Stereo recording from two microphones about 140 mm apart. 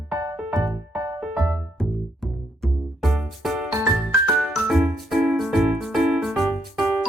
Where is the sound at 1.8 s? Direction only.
Centre (ahead or behind).